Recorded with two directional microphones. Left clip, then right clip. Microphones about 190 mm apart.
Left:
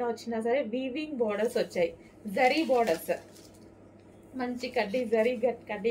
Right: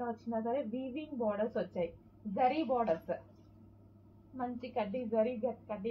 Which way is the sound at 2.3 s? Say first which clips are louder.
Left 7 dB; 20° left (ahead or behind).